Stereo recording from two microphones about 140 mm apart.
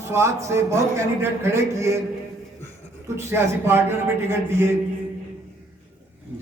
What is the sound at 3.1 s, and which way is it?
A man's voice, 15° right (ahead or behind).